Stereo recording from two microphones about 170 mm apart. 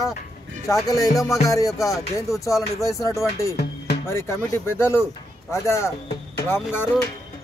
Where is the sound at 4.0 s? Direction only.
15° left (ahead or behind).